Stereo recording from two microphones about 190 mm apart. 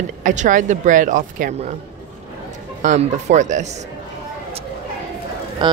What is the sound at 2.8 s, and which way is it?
Speech, 40° right (ahead or behind).